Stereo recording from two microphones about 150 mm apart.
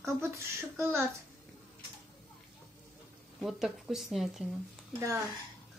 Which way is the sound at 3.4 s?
Centre (ahead or behind).